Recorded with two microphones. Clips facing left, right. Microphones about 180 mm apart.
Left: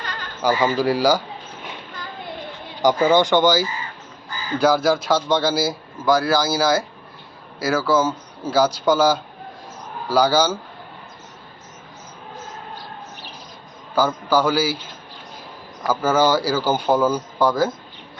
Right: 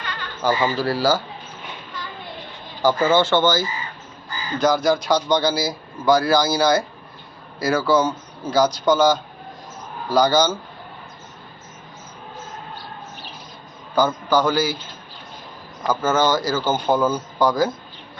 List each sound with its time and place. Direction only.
0.0 s a sound: 40° left (ahead or behind)
0.4 s speech: 15° left (ahead or behind)
2.8 s a man's voice: 15° left (ahead or behind)
13.9 s speech: 5° left (ahead or behind)
15.9 s speech: 10° left (ahead or behind)